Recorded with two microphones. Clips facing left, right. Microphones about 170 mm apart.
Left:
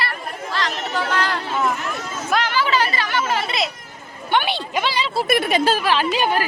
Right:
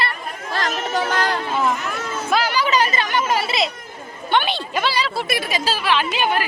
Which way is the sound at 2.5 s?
15° right (ahead or behind).